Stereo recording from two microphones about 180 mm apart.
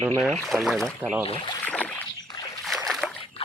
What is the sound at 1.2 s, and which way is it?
Speech, 30° left (ahead or behind).